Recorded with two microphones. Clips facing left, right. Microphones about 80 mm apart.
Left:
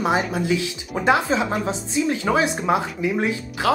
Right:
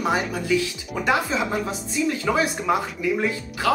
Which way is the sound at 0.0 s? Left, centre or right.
Left.